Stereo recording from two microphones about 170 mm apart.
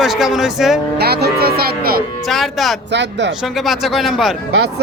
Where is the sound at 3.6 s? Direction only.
Centre (ahead or behind).